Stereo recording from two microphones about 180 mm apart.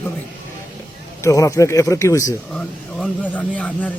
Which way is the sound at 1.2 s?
20° left (ahead or behind).